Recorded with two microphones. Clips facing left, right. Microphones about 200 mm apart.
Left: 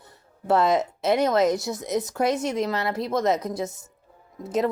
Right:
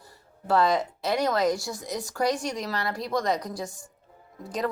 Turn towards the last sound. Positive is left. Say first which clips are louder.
# left 5 dB
turn(degrees=25)  # may be behind; listen again after turning